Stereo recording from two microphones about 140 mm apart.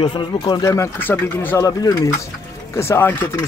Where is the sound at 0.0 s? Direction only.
30° left (ahead or behind); by 1.6 s 15° left (ahead or behind).